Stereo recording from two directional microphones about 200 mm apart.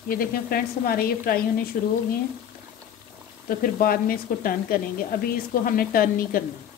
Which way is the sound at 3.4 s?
45° left (ahead or behind).